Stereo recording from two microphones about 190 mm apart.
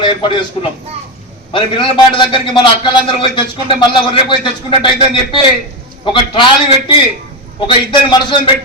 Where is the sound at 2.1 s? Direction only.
25° left (ahead or behind).